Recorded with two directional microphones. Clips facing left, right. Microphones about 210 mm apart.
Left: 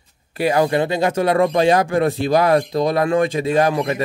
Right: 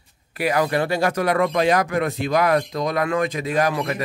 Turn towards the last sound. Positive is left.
turn(degrees=25)  # may be behind; listen again after turning